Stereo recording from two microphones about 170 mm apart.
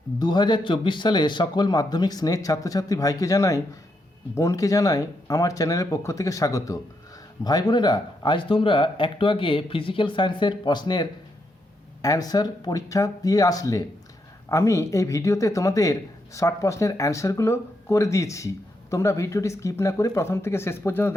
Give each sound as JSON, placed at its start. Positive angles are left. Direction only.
{"t": 0.2, "sound": "a man's voice", "side_deg": 25}